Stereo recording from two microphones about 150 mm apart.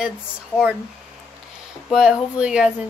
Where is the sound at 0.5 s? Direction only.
15° left (ahead or behind).